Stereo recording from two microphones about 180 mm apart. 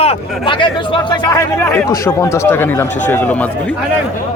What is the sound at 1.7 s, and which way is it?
Speech, 15° left (ahead or behind).